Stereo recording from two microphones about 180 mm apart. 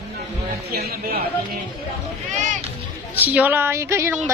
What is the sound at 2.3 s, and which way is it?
Music, 45° right (ahead or behind).